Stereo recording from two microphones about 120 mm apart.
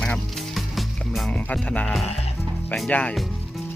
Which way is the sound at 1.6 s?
10° left (ahead or behind).